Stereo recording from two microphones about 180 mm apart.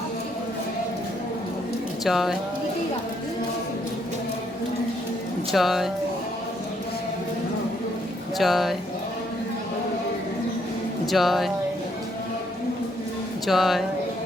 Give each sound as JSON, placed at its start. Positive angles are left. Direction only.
{"t": 2.0, "sound": "speech", "side_deg": 0}
{"t": 5.5, "sound": "speech", "side_deg": 0}
{"t": 8.4, "sound": "speech", "side_deg": 0}
{"t": 11.0, "sound": "speech", "side_deg": 0}
{"t": 13.5, "sound": "speech", "side_deg": 0}